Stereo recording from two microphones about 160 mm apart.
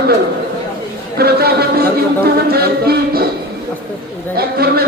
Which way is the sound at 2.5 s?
75° right (ahead or behind).